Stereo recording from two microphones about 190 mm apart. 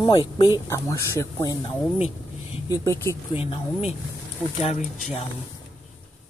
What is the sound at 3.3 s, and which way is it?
Speech, 30° left (ahead or behind).